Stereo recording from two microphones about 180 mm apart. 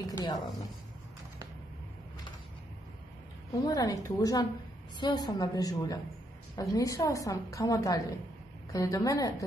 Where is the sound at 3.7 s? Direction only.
20° left (ahead or behind).